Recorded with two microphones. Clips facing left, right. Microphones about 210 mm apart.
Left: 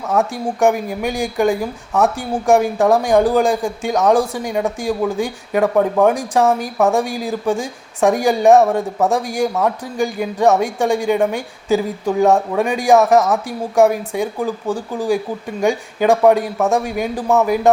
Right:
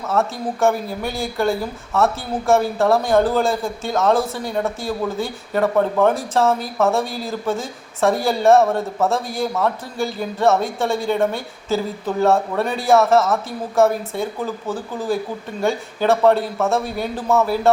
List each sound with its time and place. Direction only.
0.1 s a man's voice: 15° left (ahead or behind)